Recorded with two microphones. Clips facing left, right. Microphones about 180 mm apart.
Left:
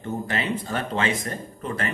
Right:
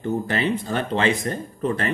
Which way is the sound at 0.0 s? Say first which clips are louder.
Right 5 dB; 30° right (ahead or behind).